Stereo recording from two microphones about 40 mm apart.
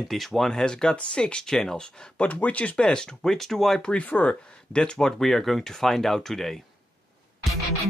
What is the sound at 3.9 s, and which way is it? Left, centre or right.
Speech, left.